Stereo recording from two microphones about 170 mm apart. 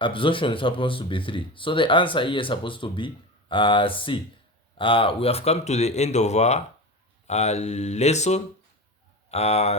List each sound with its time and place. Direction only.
0.0 s speech: 30° left (ahead or behind)